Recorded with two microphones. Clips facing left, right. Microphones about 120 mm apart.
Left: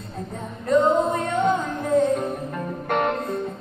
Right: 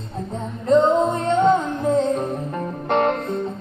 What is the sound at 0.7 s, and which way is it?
Music, 25° right (ahead or behind).